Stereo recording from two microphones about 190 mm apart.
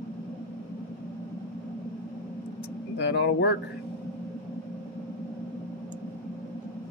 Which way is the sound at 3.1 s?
65° left (ahead or behind).